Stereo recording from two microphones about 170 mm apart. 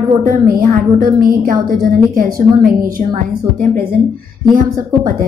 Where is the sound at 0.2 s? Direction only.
55° right (ahead or behind).